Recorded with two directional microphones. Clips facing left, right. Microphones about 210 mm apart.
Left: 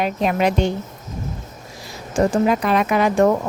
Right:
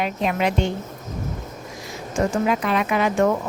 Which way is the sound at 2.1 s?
35° left (ahead or behind).